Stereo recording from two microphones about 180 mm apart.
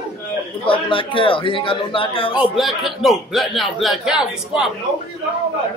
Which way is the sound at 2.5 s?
Centre (ahead or behind).